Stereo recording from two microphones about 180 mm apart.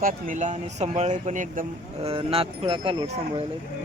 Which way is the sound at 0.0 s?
50° right (ahead or behind).